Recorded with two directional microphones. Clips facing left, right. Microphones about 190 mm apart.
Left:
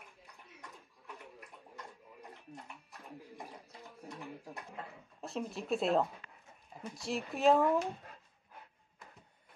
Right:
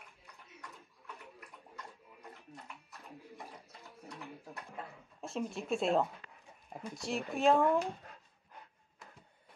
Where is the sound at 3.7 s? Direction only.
20° left (ahead or behind).